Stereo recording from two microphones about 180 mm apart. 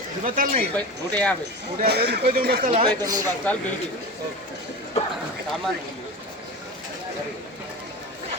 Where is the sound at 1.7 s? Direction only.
60° right (ahead or behind).